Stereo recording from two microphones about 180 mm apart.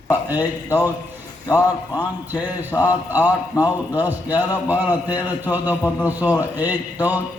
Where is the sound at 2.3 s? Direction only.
10° right (ahead or behind).